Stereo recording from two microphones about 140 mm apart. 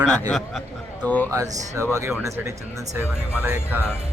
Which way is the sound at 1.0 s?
10° left (ahead or behind).